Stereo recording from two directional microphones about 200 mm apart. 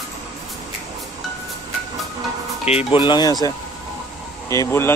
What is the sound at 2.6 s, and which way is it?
Speech, 30° left (ahead or behind).